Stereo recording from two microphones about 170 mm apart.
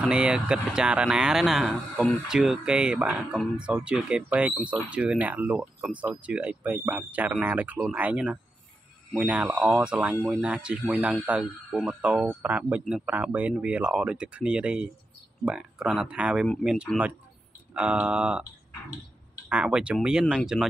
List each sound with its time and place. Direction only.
0.0 s speech: 5° right (ahead or behind)
19.5 s speech: 5° right (ahead or behind)